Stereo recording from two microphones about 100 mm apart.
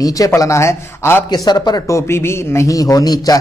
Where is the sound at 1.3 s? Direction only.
45° left (ahead or behind).